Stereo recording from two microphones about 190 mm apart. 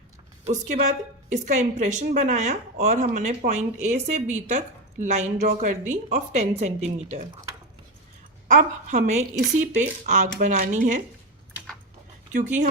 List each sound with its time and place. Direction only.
0.4 s a woman's voice: 40° right (ahead or behind)
8.4 s a woman's voice: 40° right (ahead or behind)
12.3 s a woman's voice: 40° right (ahead or behind)